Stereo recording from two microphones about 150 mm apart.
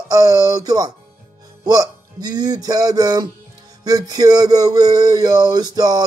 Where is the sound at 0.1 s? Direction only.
25° right (ahead or behind).